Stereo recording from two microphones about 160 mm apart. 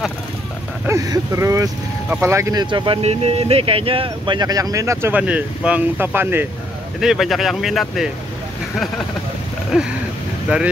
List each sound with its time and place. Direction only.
0.8 s speech: 20° right (ahead or behind)
2.6 s speech: 30° right (ahead or behind); by 6.4 s 15° right (ahead or behind)
7.0 s speech: centre (ahead or behind)
9.7 s speech: 5° right (ahead or behind)